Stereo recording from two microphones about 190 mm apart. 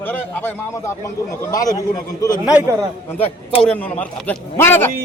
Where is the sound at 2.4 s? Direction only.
5° right (ahead or behind).